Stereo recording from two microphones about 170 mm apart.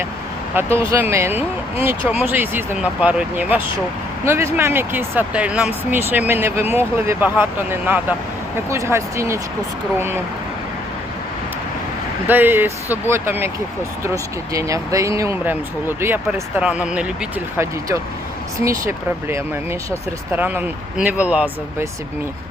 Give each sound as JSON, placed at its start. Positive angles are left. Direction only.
{"t": 0.5, "sound": "speech", "side_deg": -15}
{"t": 12.3, "sound": "speech", "side_deg": -10}
{"t": 18.6, "sound": "speech", "side_deg": -15}